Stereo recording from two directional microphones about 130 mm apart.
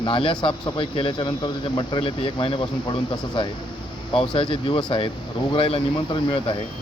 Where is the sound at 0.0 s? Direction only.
40° left (ahead or behind).